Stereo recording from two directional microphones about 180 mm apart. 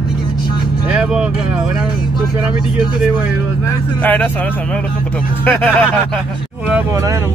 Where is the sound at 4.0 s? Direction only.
10° left (ahead or behind).